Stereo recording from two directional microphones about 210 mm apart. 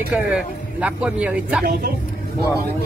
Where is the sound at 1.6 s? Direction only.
50° right (ahead or behind).